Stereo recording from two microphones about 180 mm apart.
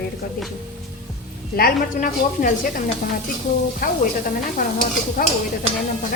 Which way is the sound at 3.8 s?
55° left (ahead or behind).